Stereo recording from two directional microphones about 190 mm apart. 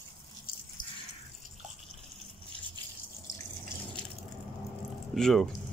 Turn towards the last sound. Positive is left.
turn(degrees=0)  # may be behind; listen again after turning